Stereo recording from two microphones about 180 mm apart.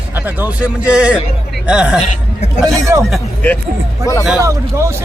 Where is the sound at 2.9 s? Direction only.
15° right (ahead or behind).